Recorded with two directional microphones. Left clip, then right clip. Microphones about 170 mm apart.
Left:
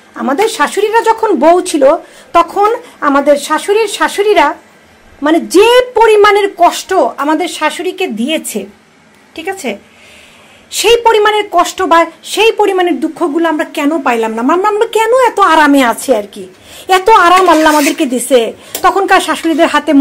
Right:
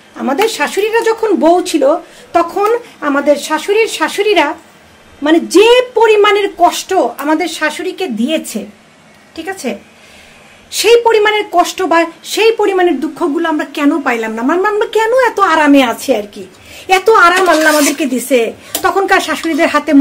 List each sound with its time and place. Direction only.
0.2 s a woman's voice: 15° left (ahead or behind)